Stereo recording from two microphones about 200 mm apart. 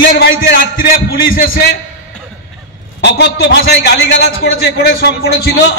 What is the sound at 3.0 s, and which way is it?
A man's voice, 60° left (ahead or behind).